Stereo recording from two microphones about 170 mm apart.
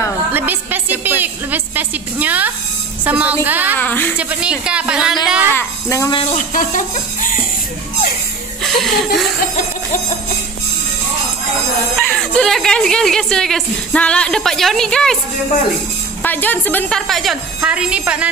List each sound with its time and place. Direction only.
0.3 s music: 10° right (ahead or behind)
3.1 s a woman's voice: 10° right (ahead or behind)
3.7 s a woman's voice: 10° left (ahead or behind)
4.2 s a woman's voice: 5° right (ahead or behind)
5.6 s a child's voice: 15° left (ahead or behind)
6.3 s speech: 50° left (ahead or behind)
8.6 s a woman's voice: centre (ahead or behind)
12.1 s a woman's voice: 5° left (ahead or behind)
16.2 s a woman's voice: 10° left (ahead or behind); by 18.3 s 5° right (ahead or behind)